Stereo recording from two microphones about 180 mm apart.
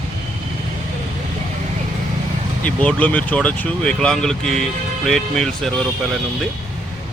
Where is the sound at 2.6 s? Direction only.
10° left (ahead or behind).